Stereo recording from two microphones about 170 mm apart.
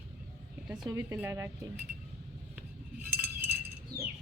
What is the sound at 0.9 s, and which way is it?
Speech, 15° right (ahead or behind).